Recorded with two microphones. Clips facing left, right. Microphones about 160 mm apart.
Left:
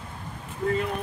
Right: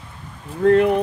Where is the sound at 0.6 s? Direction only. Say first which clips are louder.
Right 12 dB; 80° right.